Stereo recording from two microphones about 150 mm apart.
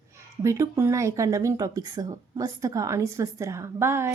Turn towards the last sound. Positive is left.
turn(degrees=-15)  # may be behind; listen again after turning